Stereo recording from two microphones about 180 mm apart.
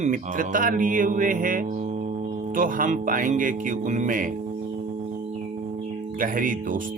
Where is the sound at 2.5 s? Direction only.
50° right (ahead or behind).